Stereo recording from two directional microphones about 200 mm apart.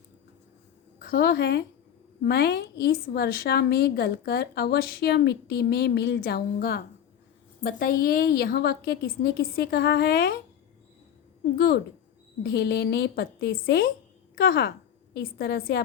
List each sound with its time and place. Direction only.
0.9 s a woman's voice: 50° left (ahead or behind)
11.5 s a woman's voice: 50° left (ahead or behind)